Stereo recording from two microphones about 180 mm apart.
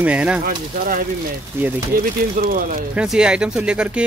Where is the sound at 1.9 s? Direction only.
50° right (ahead or behind).